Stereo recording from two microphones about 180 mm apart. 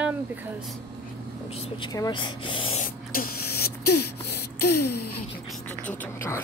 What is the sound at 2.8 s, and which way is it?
Spray, 55° left (ahead or behind).